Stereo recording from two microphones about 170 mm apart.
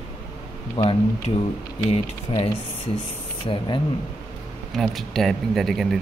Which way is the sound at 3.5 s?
25° left (ahead or behind).